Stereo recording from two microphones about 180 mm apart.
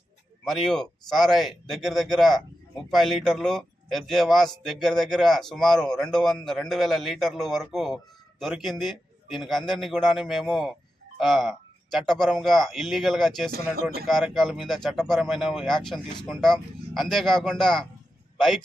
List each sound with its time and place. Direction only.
0.4 s speech: centre (ahead or behind)
13.5 s speech: 60° right (ahead or behind)
14.1 s speech: centre (ahead or behind)